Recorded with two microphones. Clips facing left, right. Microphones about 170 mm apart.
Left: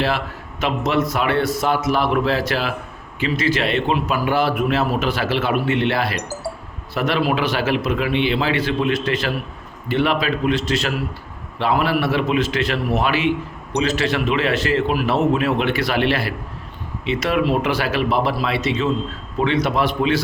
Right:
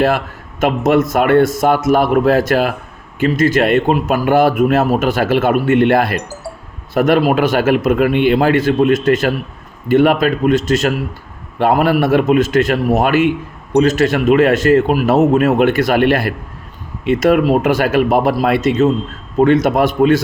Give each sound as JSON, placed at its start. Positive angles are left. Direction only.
{"t": 0.6, "sound": "a man's voice", "side_deg": -50}